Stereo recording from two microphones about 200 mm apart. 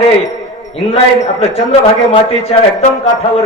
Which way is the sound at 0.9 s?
30° left (ahead or behind).